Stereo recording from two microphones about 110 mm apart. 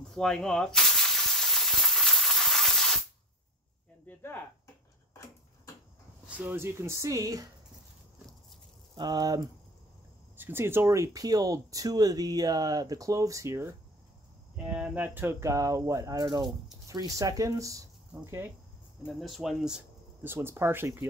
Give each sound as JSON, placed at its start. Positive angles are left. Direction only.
{"t": 0.1, "sound": "a sound", "side_deg": 5}
{"t": 4.1, "sound": "speech", "side_deg": 20}
{"t": 6.2, "sound": "speech", "side_deg": -15}
{"t": 8.9, "sound": "speech", "side_deg": -40}
{"t": 10.3, "sound": "speech", "side_deg": -20}
{"t": 14.7, "sound": "speech", "side_deg": -15}
{"t": 18.1, "sound": "speech", "side_deg": -20}
{"t": 19.0, "sound": "speech", "side_deg": 0}
{"t": 20.2, "sound": "speech", "side_deg": -20}